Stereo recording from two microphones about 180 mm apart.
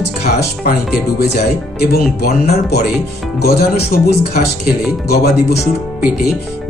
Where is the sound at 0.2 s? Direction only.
65° left (ahead or behind).